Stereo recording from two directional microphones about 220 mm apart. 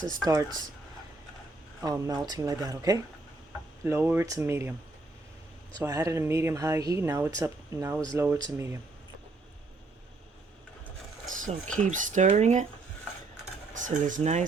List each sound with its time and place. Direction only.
1.8 s speech: 15° right (ahead or behind)
5.8 s speech: 15° right (ahead or behind)
11.3 s speech: 35° right (ahead or behind)
13.7 s speech: 35° right (ahead or behind)